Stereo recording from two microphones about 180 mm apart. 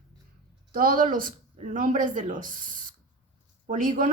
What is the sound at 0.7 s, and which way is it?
Speech, 50° right (ahead or behind).